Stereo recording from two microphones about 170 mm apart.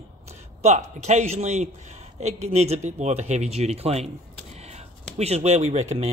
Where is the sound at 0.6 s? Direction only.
45° right (ahead or behind).